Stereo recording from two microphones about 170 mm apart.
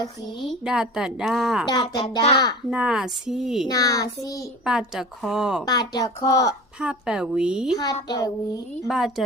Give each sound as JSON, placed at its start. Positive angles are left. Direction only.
{"t": 0.4, "sound": "speech", "side_deg": -5}
{"t": 1.6, "sound": "a woman's voice", "side_deg": 25}
{"t": 2.6, "sound": "speech", "side_deg": -5}
{"t": 3.7, "sound": "a woman's voice", "side_deg": 20}
{"t": 4.6, "sound": "speech", "side_deg": -5}
{"t": 5.6, "sound": "a woman's voice", "side_deg": 25}
{"t": 6.5, "sound": "speech", "side_deg": -5}
{"t": 8.0, "sound": "a woman's voice", "side_deg": 25}
{"t": 8.9, "sound": "speech", "side_deg": 0}